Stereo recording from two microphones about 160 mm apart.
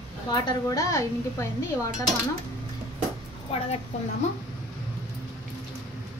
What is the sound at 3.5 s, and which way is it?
Speech, 40° left (ahead or behind).